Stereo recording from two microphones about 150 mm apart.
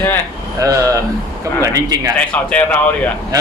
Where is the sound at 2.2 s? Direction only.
10° left (ahead or behind).